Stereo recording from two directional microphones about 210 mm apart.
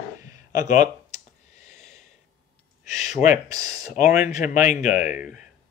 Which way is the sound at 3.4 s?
15° right (ahead or behind).